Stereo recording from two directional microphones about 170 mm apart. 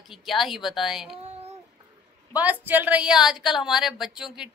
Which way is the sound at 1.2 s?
40° right (ahead or behind).